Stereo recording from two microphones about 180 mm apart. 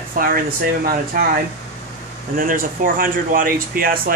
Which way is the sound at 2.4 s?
50° right (ahead or behind).